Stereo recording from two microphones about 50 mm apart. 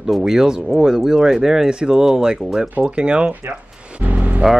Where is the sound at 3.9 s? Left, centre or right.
Right.